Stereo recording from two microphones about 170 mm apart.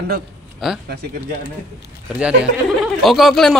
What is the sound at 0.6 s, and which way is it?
Speech, centre (ahead or behind).